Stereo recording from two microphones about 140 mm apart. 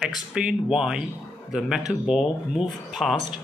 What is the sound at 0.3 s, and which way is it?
Speech, 5° right (ahead or behind).